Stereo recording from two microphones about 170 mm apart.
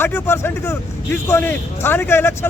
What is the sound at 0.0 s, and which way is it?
A man's voice, 15° left (ahead or behind).